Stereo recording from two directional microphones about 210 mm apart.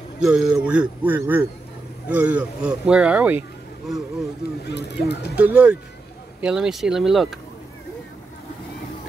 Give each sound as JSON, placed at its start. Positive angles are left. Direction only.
{"t": 0.2, "sound": "a man's voice", "side_deg": -5}
{"t": 4.6, "sound": "speech", "side_deg": 50}
{"t": 5.4, "sound": "speech", "side_deg": -5}